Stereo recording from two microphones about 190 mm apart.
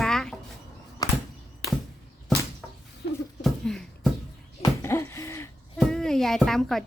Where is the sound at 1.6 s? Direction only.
60° left (ahead or behind).